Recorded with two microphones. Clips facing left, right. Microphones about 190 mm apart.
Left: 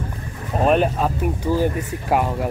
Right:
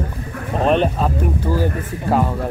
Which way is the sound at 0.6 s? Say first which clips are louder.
Right 1 dB; 5° left (ahead or behind).